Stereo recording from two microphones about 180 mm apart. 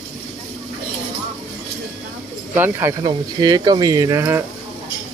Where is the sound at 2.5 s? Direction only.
15° right (ahead or behind).